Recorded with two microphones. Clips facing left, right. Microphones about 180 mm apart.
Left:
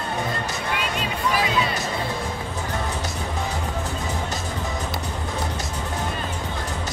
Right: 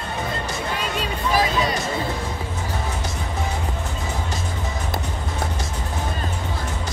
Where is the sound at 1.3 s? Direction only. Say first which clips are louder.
Right 4 dB; 40° right (ahead or behind).